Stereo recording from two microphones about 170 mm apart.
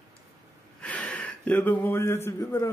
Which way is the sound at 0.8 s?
10° left (ahead or behind).